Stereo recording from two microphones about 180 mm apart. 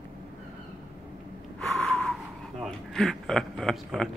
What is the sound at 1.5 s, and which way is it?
Gasp, 5° left (ahead or behind).